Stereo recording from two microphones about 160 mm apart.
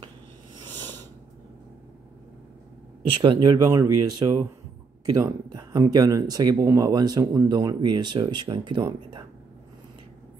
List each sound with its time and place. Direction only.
3.1 s speech: 30° right (ahead or behind)